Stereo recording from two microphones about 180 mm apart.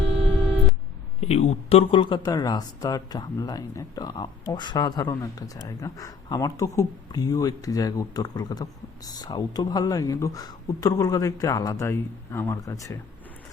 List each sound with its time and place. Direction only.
1.2 s speech: 35° left (ahead or behind); by 13.0 s 20° left (ahead or behind)